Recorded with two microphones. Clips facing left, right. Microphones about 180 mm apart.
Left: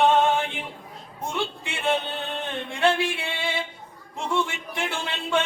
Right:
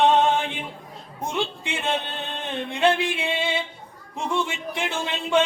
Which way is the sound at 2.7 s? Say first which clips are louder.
Right 1 dB; 20° right (ahead or behind).